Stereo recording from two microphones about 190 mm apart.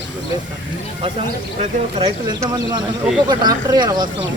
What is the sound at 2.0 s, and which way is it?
Speech, 20° right (ahead or behind).